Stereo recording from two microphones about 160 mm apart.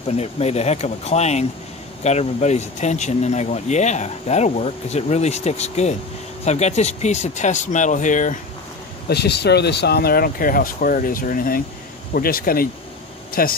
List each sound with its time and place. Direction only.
0.1 s speech: 40° left (ahead or behind)
9.1 s speech: 90° left; by 13.6 s 65° left (ahead or behind)